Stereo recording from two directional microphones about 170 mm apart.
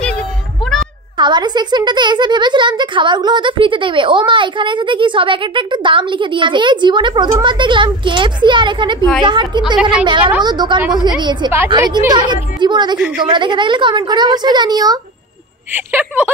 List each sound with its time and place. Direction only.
1.1 s speech: 25° right (ahead or behind)
9.8 s a woman's voice: 5° right (ahead or behind)
10.0 s speech: 30° right (ahead or behind)
10.8 s a woman's voice: 5° right (ahead or behind)
11.1 s speech: 25° right (ahead or behind)
15.7 s a woman's voice: 10° right (ahead or behind)